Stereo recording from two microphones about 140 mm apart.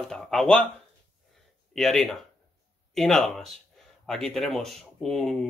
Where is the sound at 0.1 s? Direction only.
Centre (ahead or behind).